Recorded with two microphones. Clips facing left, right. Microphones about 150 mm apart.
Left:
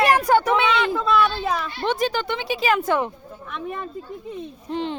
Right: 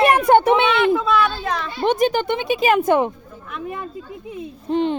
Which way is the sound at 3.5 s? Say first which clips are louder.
Right 1 dB; centre (ahead or behind).